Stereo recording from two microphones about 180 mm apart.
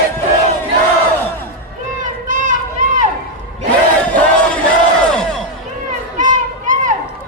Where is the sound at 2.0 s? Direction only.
45° right (ahead or behind).